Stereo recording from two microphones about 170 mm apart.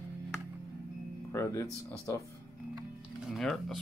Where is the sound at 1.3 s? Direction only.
15° left (ahead or behind).